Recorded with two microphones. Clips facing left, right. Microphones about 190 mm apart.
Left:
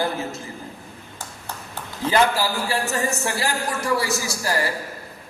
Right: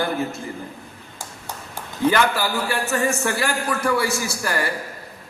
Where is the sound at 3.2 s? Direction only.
60° right (ahead or behind).